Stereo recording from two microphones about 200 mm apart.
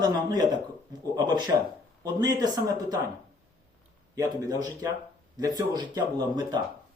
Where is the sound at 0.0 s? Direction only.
20° right (ahead or behind).